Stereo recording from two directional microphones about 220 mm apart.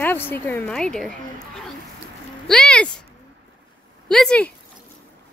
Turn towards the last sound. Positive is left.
turn(degrees=5)  # may be behind; listen again after turning